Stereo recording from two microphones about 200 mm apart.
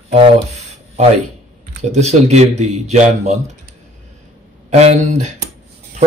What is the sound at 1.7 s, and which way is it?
A man's voice, 35° right (ahead or behind).